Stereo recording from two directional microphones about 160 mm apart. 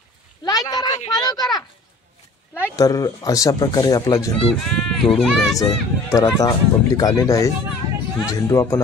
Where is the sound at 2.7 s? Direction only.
20° left (ahead or behind).